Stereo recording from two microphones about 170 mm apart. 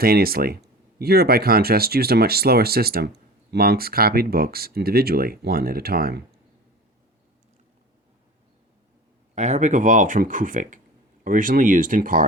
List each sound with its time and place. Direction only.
0.0 s speech: 65° right (ahead or behind)
9.3 s speech: 45° right (ahead or behind)